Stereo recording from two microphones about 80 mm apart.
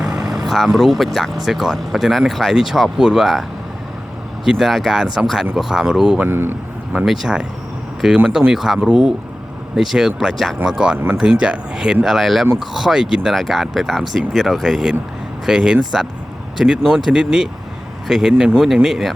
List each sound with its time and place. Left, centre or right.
0.0 s speech: centre
4.4 s speech: centre
6.2 s speech: right
6.9 s speech: centre
10.9 s speech: right
11.2 s speech: centre